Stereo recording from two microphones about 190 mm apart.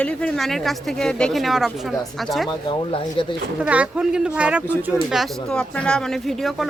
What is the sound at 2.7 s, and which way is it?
Speech, 25° left (ahead or behind).